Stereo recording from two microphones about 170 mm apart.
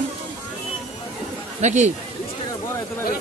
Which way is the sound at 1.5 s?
45° right (ahead or behind).